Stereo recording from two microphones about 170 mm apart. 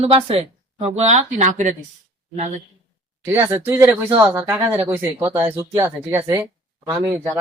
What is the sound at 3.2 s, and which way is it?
Speech, 15° right (ahead or behind).